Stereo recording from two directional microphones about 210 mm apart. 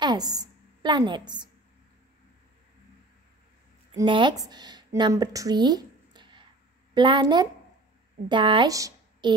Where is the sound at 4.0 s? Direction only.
20° right (ahead or behind).